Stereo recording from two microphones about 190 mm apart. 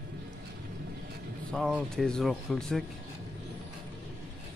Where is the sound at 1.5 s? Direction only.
Centre (ahead or behind).